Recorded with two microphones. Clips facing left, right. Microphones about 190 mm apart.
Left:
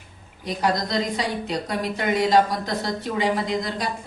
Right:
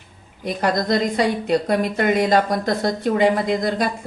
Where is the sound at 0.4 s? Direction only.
55° right (ahead or behind).